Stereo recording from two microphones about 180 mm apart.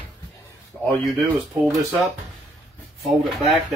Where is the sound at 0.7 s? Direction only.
5° left (ahead or behind).